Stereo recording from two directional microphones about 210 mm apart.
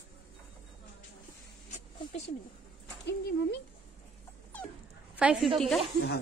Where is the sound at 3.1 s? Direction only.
55° left (ahead or behind).